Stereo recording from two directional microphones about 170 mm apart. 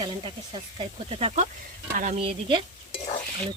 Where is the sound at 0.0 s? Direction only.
30° right (ahead or behind).